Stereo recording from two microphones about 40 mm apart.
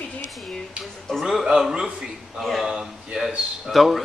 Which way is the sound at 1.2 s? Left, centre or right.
Centre.